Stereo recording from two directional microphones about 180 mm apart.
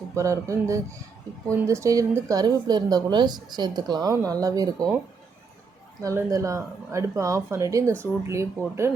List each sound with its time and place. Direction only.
0.2 s speech: 15° right (ahead or behind)
6.0 s speech: 15° right (ahead or behind)